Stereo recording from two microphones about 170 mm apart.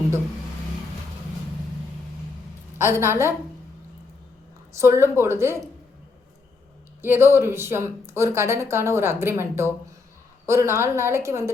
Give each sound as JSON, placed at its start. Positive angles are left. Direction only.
{"t": 2.7, "sound": "a woman's voice", "side_deg": -15}
{"t": 4.8, "sound": "a woman's voice", "side_deg": -15}
{"t": 7.0, "sound": "a woman's voice", "side_deg": -15}